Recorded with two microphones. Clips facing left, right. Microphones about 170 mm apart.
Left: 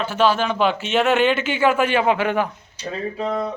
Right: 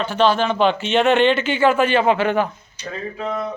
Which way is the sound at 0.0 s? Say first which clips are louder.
Right 1 dB; 5° left (ahead or behind).